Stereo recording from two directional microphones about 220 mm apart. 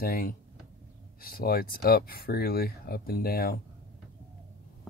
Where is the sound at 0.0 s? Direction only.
40° left (ahead or behind).